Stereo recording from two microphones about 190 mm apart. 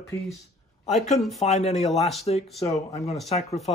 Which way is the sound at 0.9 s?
35° left (ahead or behind).